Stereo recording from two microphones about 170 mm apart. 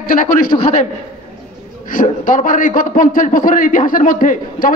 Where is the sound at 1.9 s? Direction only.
50° left (ahead or behind).